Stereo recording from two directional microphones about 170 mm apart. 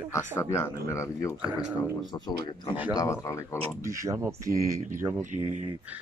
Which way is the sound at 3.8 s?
20° right (ahead or behind).